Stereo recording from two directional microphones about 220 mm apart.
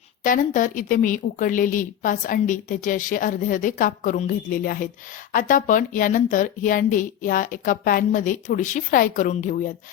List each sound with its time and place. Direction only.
0.2 s a woman's voice: 35° left (ahead or behind)